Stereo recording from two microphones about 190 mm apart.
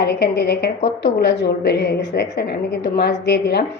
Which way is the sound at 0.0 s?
60° left (ahead or behind).